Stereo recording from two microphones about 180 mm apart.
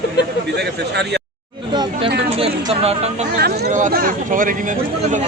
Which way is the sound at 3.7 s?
45° right (ahead or behind).